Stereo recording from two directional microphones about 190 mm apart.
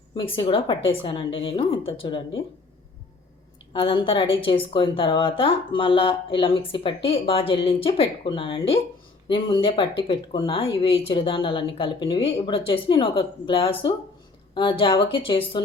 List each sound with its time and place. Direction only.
0.2 s a woman's voice: 25° left (ahead or behind)
3.7 s a woman's voice: 25° left (ahead or behind)